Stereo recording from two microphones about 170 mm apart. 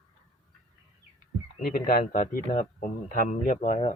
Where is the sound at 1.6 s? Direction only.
55° left (ahead or behind).